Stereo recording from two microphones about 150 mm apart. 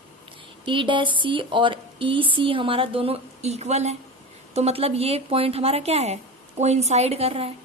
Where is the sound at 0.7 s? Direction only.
35° right (ahead or behind).